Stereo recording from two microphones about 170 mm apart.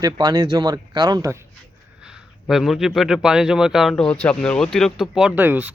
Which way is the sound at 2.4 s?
Centre (ahead or behind).